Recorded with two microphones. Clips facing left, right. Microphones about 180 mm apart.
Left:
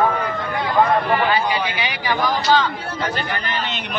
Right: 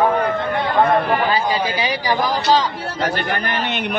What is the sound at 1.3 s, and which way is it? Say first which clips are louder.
Speech: right 1 dB; 35° right (ahead or behind).